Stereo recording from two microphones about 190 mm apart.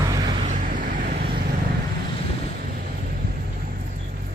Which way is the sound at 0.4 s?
45° right (ahead or behind).